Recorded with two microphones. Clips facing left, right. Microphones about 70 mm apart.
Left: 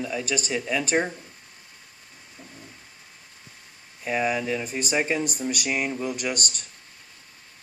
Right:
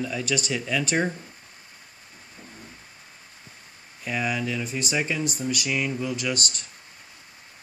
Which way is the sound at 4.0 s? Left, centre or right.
Left.